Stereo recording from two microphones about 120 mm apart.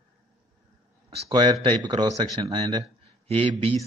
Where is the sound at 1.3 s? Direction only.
40° right (ahead or behind).